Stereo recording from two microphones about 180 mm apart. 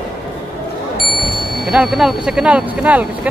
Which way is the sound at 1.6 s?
5° right (ahead or behind).